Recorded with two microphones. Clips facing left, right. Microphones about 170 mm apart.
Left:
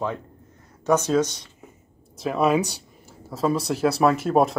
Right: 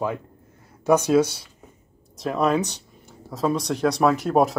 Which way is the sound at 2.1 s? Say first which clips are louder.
Left 1 dB; 5° left (ahead or behind).